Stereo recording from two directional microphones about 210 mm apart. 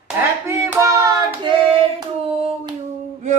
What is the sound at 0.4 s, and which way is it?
Hands, 10° right (ahead or behind).